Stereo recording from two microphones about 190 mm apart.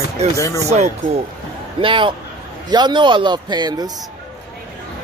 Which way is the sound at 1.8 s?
25° right (ahead or behind).